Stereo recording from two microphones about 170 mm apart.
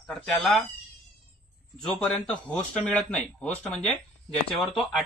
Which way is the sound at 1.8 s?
Centre (ahead or behind).